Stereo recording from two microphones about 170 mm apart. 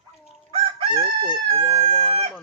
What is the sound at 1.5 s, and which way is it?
Speech, 30° right (ahead or behind).